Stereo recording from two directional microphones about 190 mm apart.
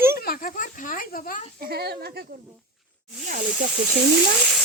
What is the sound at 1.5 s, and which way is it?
Speech, 55° right (ahead or behind).